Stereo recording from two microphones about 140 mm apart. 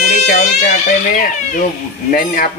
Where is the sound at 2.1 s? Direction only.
90° left.